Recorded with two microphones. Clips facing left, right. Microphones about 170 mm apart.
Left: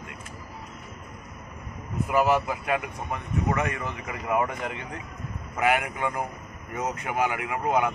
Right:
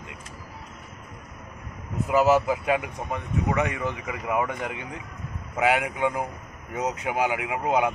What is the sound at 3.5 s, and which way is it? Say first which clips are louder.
Speech: right 3 dB; 5° right (ahead or behind).